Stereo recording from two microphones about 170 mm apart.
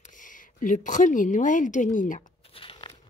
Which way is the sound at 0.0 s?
50° left (ahead or behind).